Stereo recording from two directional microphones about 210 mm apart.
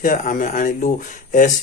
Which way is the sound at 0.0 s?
40° left (ahead or behind).